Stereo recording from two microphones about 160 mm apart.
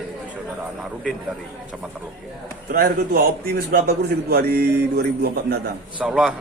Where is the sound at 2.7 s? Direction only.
75° right (ahead or behind).